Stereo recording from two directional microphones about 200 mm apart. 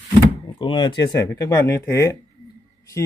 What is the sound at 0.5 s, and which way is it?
Speech, 25° left (ahead or behind).